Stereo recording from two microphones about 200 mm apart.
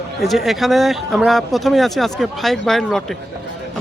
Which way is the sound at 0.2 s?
Centre (ahead or behind).